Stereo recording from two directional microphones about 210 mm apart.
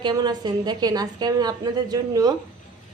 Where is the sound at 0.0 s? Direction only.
20° right (ahead or behind).